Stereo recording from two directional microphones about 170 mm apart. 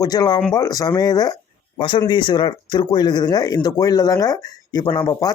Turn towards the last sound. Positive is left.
turn(degrees=25)  # may be behind; listen again after turning